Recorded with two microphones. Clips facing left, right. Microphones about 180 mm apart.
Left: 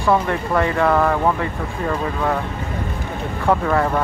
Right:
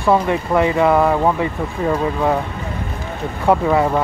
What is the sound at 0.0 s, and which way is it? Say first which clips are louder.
Speech: right 2 dB; 15° right (ahead or behind).